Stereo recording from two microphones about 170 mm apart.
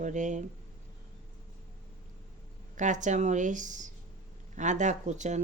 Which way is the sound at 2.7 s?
45° right (ahead or behind).